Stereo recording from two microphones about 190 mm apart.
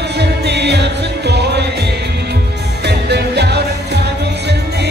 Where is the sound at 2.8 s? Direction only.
60° right (ahead or behind).